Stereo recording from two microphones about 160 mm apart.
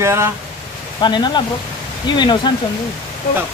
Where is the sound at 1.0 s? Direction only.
30° left (ahead or behind).